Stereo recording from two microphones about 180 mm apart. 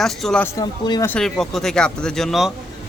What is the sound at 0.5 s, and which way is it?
Speech, 20° left (ahead or behind).